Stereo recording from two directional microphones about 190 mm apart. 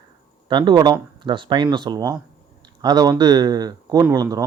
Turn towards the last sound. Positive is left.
turn(degrees=-20)  # may be behind; listen again after turning